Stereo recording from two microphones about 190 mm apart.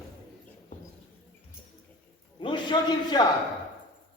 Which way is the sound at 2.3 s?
25° left (ahead or behind).